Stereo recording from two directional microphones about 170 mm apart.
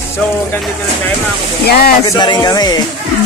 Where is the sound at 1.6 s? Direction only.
65° left (ahead or behind).